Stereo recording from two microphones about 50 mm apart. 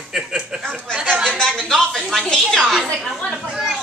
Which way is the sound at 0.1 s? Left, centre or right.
Centre.